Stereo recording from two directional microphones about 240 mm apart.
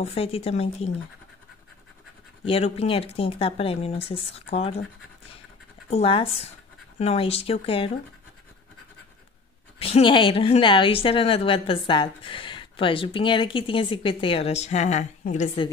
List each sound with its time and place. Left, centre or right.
0.0 s a woman's voice: left
2.4 s a woman's voice: left
5.9 s a woman's voice: left
9.8 s a woman's voice: left